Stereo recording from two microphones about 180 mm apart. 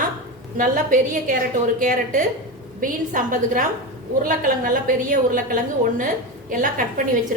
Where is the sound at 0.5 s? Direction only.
50° right (ahead or behind).